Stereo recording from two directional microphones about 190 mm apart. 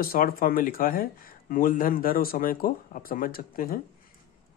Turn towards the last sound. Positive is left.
turn(degrees=50)  # may be behind; listen again after turning